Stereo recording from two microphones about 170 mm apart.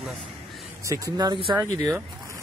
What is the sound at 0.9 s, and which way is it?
Speech, 20° right (ahead or behind).